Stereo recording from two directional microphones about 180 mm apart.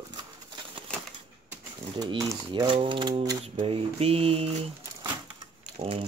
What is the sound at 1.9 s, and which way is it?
Speech, 20° right (ahead or behind).